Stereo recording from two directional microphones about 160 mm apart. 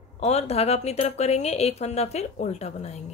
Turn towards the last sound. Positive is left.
turn(degrees=45)  # may be behind; listen again after turning